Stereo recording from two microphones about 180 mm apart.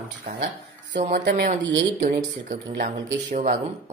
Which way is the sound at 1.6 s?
85° right.